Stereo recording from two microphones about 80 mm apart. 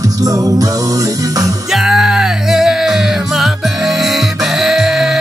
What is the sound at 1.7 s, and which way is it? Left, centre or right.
Music, centre.